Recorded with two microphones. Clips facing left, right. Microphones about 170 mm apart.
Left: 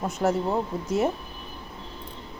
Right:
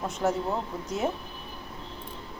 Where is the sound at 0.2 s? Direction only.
25° left (ahead or behind).